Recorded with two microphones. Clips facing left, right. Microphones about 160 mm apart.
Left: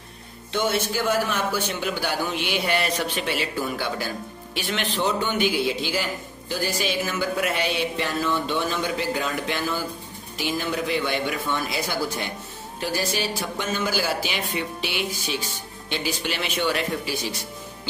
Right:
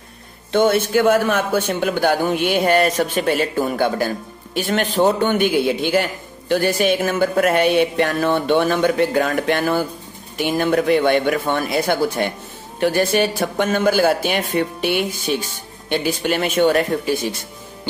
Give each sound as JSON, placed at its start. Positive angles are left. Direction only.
{"t": 0.5, "sound": "a man's voice", "side_deg": -55}